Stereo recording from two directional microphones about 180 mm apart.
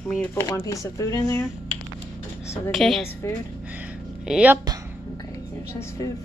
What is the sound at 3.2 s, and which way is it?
Speech, 15° left (ahead or behind).